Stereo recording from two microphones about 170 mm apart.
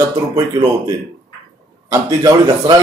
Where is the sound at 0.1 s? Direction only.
20° right (ahead or behind).